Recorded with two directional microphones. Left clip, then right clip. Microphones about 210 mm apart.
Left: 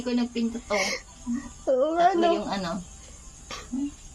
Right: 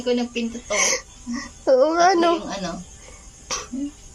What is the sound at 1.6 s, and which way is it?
Speech, 30° right (ahead or behind).